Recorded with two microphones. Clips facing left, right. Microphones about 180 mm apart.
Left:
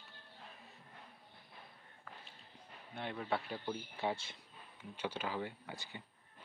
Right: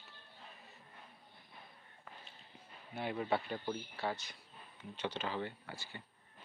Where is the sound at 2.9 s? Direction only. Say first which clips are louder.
Right 3 dB; 5° right (ahead or behind).